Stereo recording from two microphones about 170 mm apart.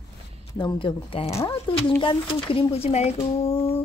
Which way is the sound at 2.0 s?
30° left (ahead or behind).